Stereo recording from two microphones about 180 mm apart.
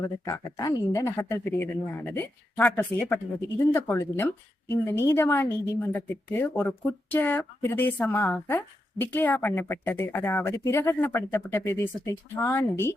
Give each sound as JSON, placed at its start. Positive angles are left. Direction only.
{"t": 0.3, "sound": "speech", "side_deg": 15}